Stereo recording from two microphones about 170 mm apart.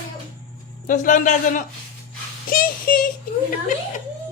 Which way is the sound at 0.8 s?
50° left (ahead or behind).